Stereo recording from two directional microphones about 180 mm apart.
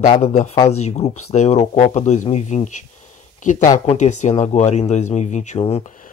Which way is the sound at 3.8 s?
40° left (ahead or behind).